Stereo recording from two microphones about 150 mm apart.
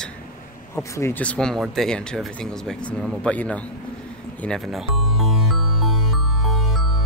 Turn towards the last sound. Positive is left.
turn(degrees=0)  # may be behind; listen again after turning